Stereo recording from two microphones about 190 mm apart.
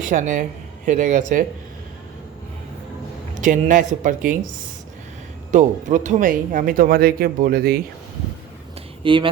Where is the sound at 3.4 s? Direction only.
40° right (ahead or behind).